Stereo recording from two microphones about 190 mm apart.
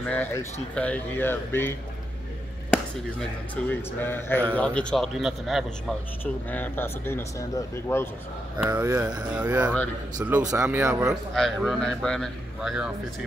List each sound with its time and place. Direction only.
0.1 s speech: 10° left (ahead or behind)
3.6 s speech: 5° left (ahead or behind)
6.5 s speech: 10° left (ahead or behind)
8.7 s speech: 15° right (ahead or behind)
9.3 s speech: 10° right (ahead or behind)
11.1 s speech: centre (ahead or behind)